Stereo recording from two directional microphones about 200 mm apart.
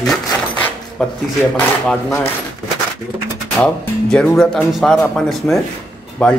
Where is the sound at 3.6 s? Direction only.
5° left (ahead or behind).